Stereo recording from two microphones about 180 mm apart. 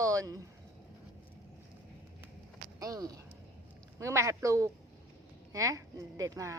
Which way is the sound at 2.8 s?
20° right (ahead or behind).